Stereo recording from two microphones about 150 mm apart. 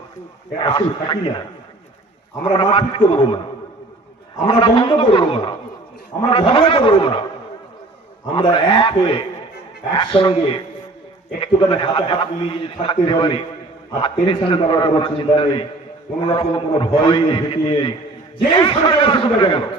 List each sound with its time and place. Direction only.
0.6 s a man's voice: 35° left (ahead or behind)
2.4 s a man's voice: 35° left (ahead or behind)
4.4 s a man's voice: 35° left (ahead or behind)
8.4 s a man's voice: 35° left (ahead or behind)